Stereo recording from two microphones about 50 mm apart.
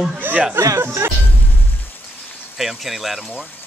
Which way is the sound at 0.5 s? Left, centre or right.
Right.